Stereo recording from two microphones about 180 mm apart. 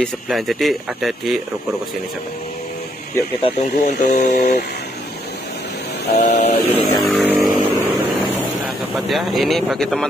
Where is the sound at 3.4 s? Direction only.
40° left (ahead or behind).